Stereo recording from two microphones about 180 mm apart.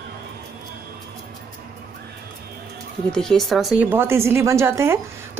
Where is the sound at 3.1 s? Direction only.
5° left (ahead or behind).